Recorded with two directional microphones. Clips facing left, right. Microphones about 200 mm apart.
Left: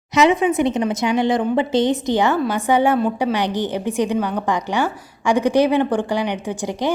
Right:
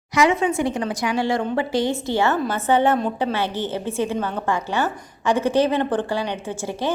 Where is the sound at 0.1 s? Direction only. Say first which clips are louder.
Left 3 dB; 20° left (ahead or behind).